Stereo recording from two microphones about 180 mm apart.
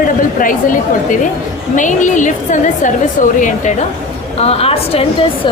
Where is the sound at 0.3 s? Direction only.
50° left (ahead or behind); by 5.0 s 35° left (ahead or behind).